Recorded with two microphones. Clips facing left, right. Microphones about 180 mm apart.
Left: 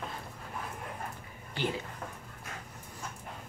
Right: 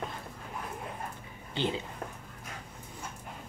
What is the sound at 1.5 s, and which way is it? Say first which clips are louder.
Speech: right 2 dB; 20° right (ahead or behind).